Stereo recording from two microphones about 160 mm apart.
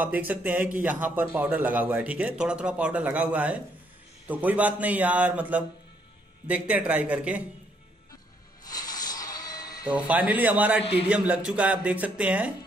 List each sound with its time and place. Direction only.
0.0 s a man's voice: 10° right (ahead or behind)
8.6 s a sound: 25° left (ahead or behind)
9.8 s a man's voice: 10° right (ahead or behind)
10.8 s speech: 35° left (ahead or behind)
11.1 s a man's voice: 5° right (ahead or behind)